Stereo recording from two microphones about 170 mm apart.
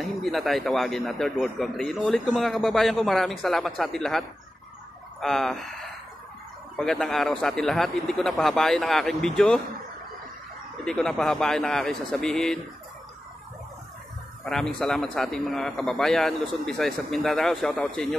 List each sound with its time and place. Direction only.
0.0 s a man's voice: centre (ahead or behind)
5.2 s a man's voice: centre (ahead or behind)
10.9 s a man's voice: 5° left (ahead or behind)
14.4 s a man's voice: centre (ahead or behind)